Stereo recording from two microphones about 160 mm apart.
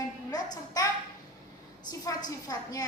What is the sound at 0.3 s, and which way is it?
Speech, 25° left (ahead or behind).